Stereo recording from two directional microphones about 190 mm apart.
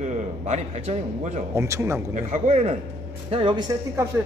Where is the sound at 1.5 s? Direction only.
15° right (ahead or behind).